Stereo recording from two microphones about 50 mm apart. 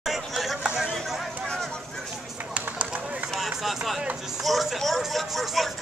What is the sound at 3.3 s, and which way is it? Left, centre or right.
Run, centre.